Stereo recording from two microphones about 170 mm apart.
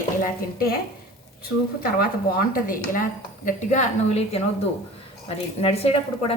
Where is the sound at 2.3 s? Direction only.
55° left (ahead or behind).